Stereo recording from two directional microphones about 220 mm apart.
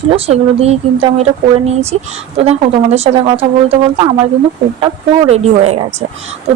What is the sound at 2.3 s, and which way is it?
A woman's voice, 30° right (ahead or behind).